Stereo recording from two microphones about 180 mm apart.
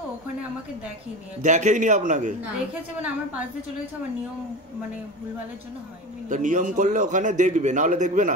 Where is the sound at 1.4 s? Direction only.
40° right (ahead or behind).